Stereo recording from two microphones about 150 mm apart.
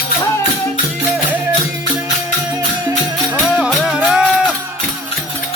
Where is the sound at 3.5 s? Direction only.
5° right (ahead or behind).